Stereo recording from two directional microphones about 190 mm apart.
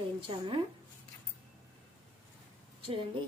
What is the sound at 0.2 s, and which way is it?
Speech, 25° right (ahead or behind).